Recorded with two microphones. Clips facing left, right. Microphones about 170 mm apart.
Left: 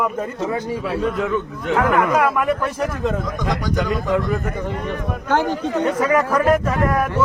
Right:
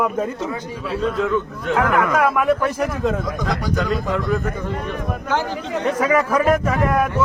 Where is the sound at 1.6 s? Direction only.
20° left (ahead or behind).